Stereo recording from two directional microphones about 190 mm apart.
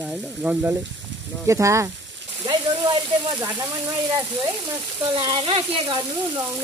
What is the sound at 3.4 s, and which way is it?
Speech, 20° right (ahead or behind).